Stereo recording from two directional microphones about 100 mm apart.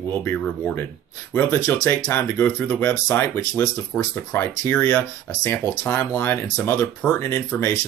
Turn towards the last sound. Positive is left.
turn(degrees=20)  # may be behind; listen again after turning